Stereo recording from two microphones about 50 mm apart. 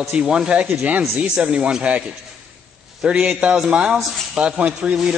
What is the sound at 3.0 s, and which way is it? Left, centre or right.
Speech, right.